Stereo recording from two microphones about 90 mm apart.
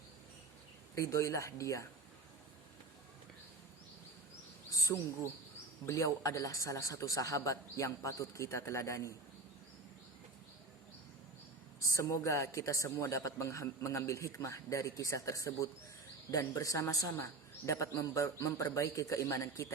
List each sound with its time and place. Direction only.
0.9 s a man's voice: 35° left (ahead or behind)
4.7 s insect: 35° left (ahead or behind)
5.8 s a man's voice: 40° left (ahead or behind)
11.9 s a man's voice: 35° left (ahead or behind)